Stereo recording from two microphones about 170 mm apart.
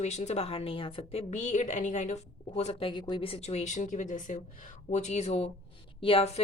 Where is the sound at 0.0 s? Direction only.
40° left (ahead or behind).